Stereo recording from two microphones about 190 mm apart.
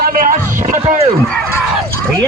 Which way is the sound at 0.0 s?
50° right (ahead or behind).